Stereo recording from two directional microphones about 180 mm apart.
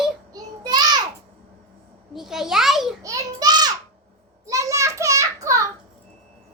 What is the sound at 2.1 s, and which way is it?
Speech, centre (ahead or behind).